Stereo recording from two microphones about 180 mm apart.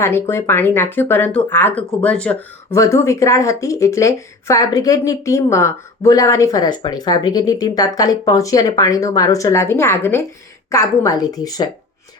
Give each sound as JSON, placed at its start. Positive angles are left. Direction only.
{"t": 0.0, "sound": "speech", "side_deg": 15}